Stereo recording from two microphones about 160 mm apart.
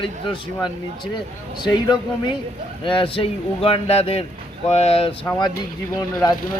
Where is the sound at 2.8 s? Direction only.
30° left (ahead or behind).